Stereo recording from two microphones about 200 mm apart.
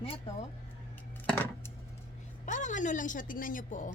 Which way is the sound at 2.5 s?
40° left (ahead or behind).